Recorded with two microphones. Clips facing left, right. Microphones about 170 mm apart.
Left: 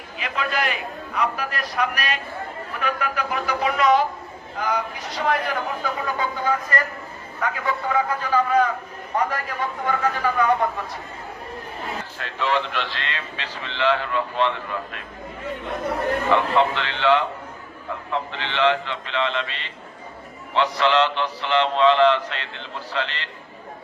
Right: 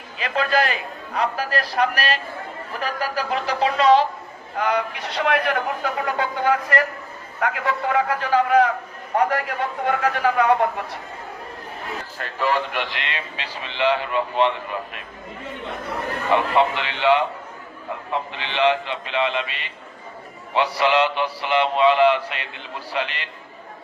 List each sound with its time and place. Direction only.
0.2 s a man's voice: 35° right (ahead or behind)
4.5 s a man's voice: 70° right (ahead or behind)
12.2 s speech: 45° right (ahead or behind)
12.7 s speech: 15° right (ahead or behind)
16.3 s speech: 15° right (ahead or behind)